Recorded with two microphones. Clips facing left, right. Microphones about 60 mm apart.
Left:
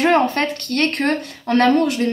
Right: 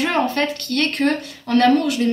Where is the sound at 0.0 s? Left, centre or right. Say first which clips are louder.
Left 3 dB; left.